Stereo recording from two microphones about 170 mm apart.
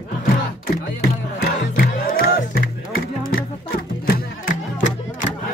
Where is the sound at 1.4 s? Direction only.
60° left (ahead or behind).